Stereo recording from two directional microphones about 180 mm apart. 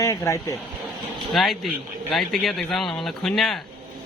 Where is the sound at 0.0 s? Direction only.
15° left (ahead or behind).